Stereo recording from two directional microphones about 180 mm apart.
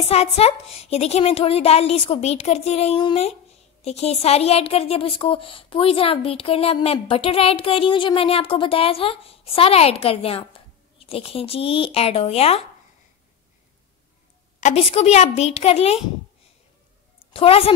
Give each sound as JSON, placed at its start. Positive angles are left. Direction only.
{"t": 0.1, "sound": "a woman's voice", "side_deg": 35}
{"t": 14.6, "sound": "a woman's voice", "side_deg": 35}
{"t": 17.3, "sound": "a woman's voice", "side_deg": 30}